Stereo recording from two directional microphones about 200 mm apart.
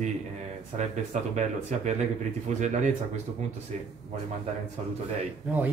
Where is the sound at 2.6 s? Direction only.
35° right (ahead or behind).